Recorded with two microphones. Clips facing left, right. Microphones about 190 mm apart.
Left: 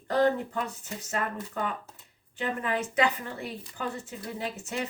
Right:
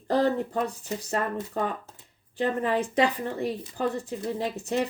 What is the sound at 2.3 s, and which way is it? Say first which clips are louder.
Speech: right 5 dB; 35° right (ahead or behind).